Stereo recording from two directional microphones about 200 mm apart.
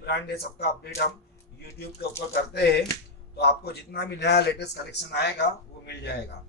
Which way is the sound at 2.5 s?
55° left (ahead or behind).